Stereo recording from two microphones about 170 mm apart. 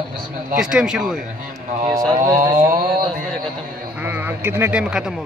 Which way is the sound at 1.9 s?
20° right (ahead or behind).